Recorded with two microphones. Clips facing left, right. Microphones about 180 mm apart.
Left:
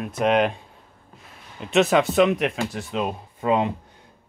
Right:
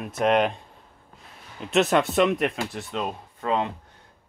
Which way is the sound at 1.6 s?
Centre (ahead or behind).